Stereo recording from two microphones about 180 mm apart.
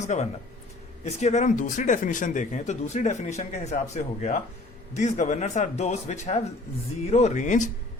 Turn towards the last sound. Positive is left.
turn(degrees=40)  # may be behind; listen again after turning